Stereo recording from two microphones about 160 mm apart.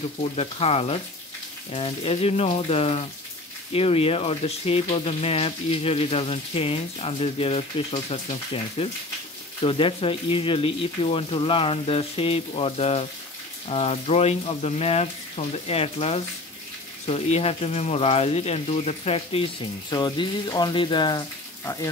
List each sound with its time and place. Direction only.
0.2 s speech: 40° left (ahead or behind); by 21.8 s 25° left (ahead or behind)